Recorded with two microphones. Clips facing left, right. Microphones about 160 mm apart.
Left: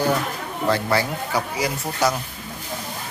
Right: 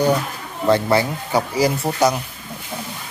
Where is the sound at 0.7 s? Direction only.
20° right (ahead or behind).